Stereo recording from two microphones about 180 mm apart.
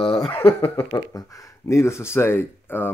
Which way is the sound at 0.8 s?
20° left (ahead or behind).